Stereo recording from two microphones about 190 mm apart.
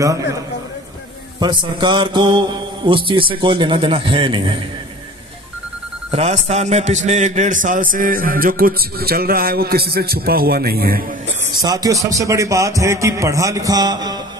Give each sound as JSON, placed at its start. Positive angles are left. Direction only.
{"t": 0.0, "sound": "a man's voice", "side_deg": -15}
{"t": 1.4, "sound": "a man's voice", "side_deg": -25}
{"t": 6.1, "sound": "a man's voice", "side_deg": -35}
{"t": 11.6, "sound": "a man's voice", "side_deg": -20}